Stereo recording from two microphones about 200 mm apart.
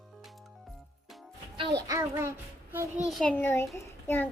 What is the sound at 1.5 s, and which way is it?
Child singing, 20° right (ahead or behind).